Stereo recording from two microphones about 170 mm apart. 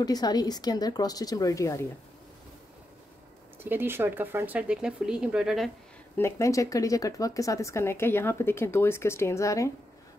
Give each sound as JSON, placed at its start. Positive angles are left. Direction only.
{"t": 0.0, "sound": "a woman's voice", "side_deg": 25}
{"t": 3.6, "sound": "speech", "side_deg": -10}
{"t": 6.1, "sound": "speech", "side_deg": 15}